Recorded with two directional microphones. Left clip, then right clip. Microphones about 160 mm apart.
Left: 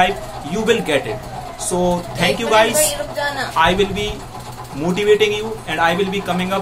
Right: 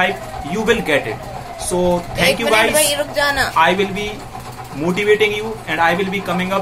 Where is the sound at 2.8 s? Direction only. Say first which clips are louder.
Right 3 dB; 70° right (ahead or behind).